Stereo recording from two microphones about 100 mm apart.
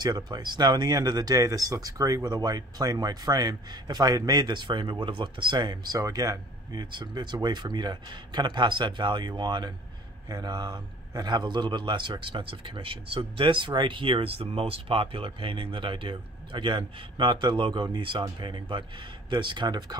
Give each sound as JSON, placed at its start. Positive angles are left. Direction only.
{"t": 0.0, "sound": "speech", "side_deg": -45}